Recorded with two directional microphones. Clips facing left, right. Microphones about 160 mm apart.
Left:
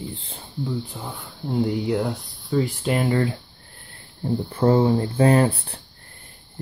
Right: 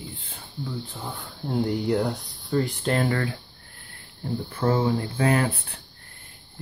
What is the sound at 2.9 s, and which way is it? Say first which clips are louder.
Speech: left 3 dB; 20° left (ahead or behind).